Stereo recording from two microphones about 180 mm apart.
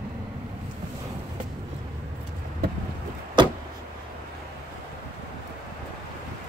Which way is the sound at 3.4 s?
25° right (ahead or behind).